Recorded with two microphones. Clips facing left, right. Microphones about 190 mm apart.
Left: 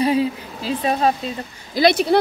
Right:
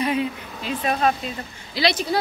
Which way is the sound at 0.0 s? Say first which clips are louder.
Left 5 dB; 30° left (ahead or behind).